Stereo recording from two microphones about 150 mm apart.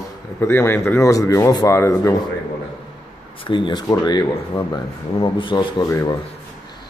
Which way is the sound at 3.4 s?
30° left (ahead or behind).